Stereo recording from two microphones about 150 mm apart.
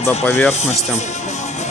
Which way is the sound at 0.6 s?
50° left (ahead or behind).